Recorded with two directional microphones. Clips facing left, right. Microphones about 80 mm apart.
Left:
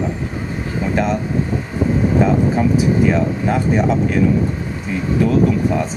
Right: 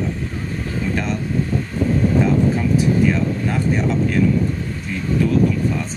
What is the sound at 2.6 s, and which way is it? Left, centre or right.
Speech, centre.